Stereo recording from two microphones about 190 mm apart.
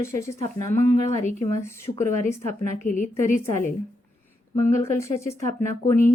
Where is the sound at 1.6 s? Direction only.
15° left (ahead or behind).